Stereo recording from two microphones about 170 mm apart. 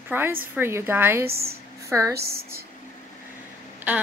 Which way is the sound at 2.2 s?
65° right (ahead or behind).